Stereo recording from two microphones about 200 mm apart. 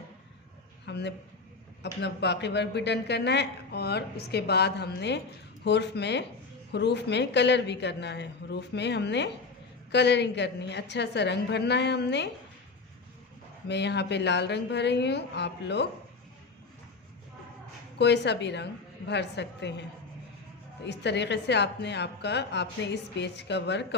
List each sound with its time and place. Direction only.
0.9 s a man's voice: 60° left (ahead or behind)
13.7 s speech: 60° left (ahead or behind)
17.9 s speech: 60° left (ahead or behind)
20.8 s speech: 60° left (ahead or behind)